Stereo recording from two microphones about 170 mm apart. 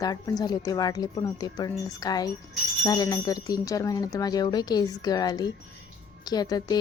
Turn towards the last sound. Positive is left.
turn(degrees=25)  # may be behind; listen again after turning